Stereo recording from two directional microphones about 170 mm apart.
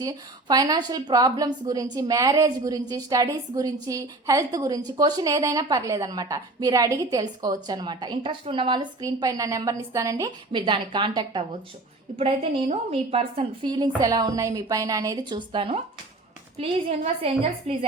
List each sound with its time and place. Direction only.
0.0 s a woman's voice: 20° right (ahead or behind)